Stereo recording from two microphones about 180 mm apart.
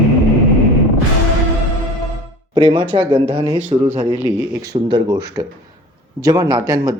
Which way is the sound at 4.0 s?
15° right (ahead or behind).